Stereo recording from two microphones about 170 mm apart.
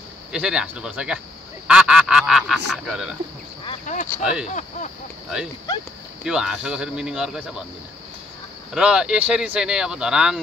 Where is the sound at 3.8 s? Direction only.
50° left (ahead or behind).